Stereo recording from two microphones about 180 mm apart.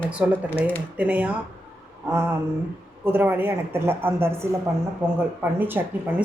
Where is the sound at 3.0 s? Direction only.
10° right (ahead or behind).